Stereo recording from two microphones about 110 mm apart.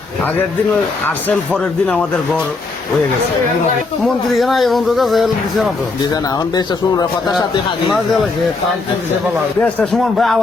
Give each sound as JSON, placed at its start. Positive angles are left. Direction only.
{"t": 1.5, "sound": "a man's voice", "side_deg": 10}
{"t": 4.0, "sound": "speech", "side_deg": 0}
{"t": 6.6, "sound": "speech", "side_deg": 35}
{"t": 9.6, "sound": "a man's voice", "side_deg": 15}
{"t": 9.9, "sound": "speech", "side_deg": 0}